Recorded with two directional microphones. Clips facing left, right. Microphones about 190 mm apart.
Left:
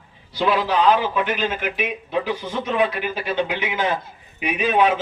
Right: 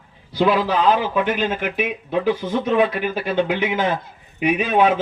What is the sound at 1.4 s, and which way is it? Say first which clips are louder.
Speech: right 2 dB; 45° right (ahead or behind).